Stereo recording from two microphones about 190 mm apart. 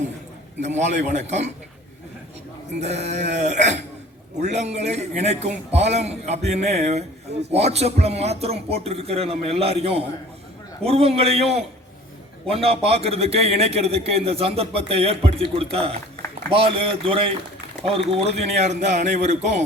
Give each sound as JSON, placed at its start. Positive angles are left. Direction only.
{"t": 0.6, "sound": "a man's voice", "side_deg": -40}
{"t": 2.8, "sound": "a man's voice", "side_deg": -35}